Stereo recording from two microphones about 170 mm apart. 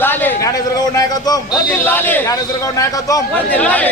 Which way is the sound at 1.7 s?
10° left (ahead or behind).